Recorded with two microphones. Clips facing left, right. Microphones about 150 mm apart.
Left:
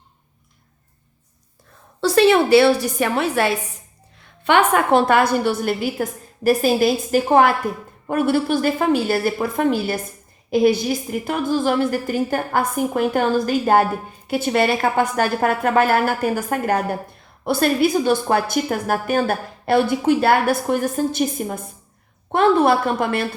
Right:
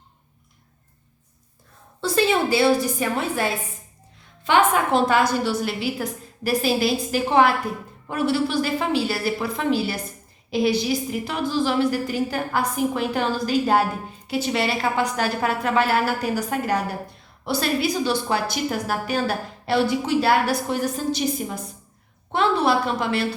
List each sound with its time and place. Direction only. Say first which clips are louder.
2.0 s a woman's voice: left 6 dB; 70° left (ahead or behind)
4.4 s a woman's voice: left 3 dB; 60° left (ahead or behind)